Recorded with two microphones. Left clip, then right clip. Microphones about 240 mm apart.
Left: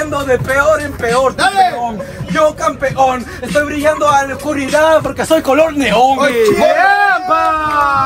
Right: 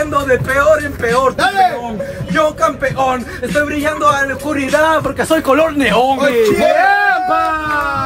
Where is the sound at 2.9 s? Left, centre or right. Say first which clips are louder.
Left 3 dB; centre.